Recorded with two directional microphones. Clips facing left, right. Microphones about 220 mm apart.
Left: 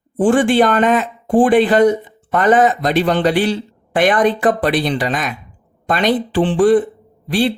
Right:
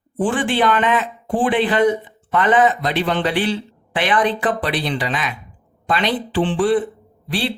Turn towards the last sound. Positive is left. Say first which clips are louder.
# left 7 dB
turn(degrees=45)  # may be behind; listen again after turning